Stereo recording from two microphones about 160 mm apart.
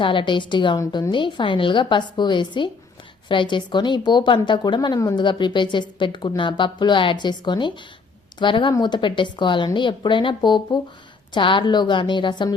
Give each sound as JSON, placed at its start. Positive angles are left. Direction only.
{"t": 0.0, "sound": "a woman's voice", "side_deg": 30}